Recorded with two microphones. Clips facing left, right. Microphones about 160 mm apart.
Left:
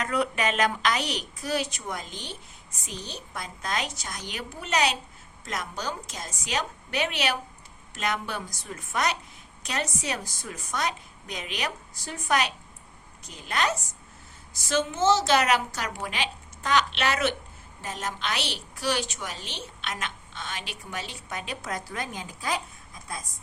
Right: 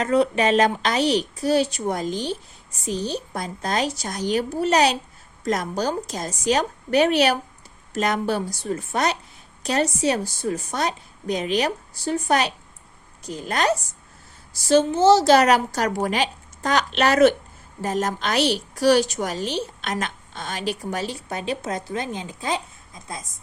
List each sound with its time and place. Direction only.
0.0 s a woman's voice: 30° right (ahead or behind)